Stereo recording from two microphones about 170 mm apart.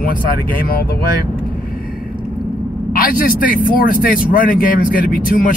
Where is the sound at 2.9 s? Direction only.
55° left (ahead or behind).